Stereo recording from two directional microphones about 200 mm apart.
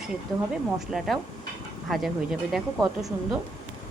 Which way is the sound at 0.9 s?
Centre (ahead or behind).